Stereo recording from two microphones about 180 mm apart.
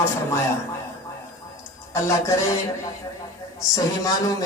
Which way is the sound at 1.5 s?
15° left (ahead or behind).